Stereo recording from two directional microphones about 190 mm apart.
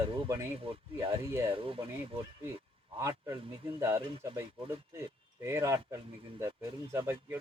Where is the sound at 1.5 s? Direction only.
30° right (ahead or behind).